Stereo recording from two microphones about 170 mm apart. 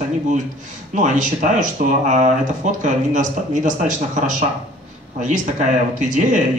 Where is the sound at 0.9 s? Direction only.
45° right (ahead or behind).